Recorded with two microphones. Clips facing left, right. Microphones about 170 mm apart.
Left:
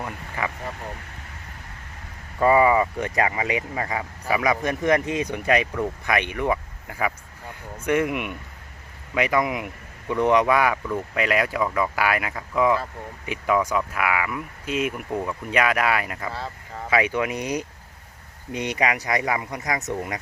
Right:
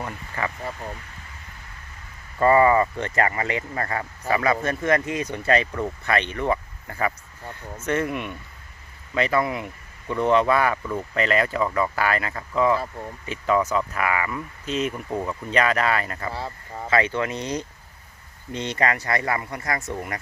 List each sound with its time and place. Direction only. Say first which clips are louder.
0.0 s a sound: even; 10° left (ahead or behind)
2.4 s speech: right 1 dB; 10° left (ahead or behind)
16.3 s speech: right 1 dB; 15° right (ahead or behind)
16.9 s speech: even; 10° left (ahead or behind)